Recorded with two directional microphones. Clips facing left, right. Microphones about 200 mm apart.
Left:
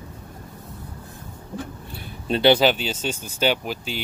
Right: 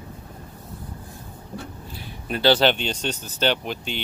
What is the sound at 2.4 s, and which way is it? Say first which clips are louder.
Speech: left 1 dB; 10° left (ahead or behind).